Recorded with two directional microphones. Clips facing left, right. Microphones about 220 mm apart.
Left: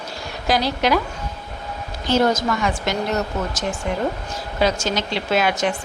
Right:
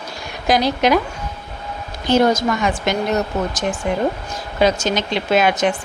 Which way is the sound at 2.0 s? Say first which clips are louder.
Right 3 dB; 15° right (ahead or behind).